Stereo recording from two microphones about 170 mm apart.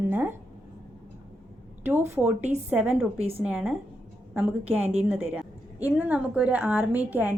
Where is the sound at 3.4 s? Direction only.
10° right (ahead or behind).